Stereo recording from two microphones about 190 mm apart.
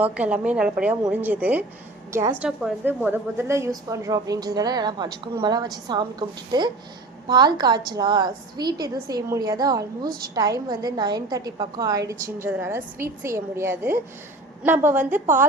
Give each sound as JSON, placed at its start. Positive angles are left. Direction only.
{"t": 0.0, "sound": "a woman's voice", "side_deg": -10}
{"t": 15.1, "sound": "a woman's voice", "side_deg": -40}